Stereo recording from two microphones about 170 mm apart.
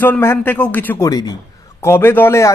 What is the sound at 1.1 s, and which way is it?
A man's voice, 20° left (ahead or behind).